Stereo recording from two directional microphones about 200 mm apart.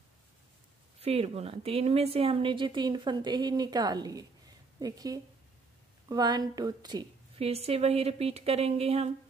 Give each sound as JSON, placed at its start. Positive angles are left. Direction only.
{"t": 0.9, "sound": "a woman's voice", "side_deg": -30}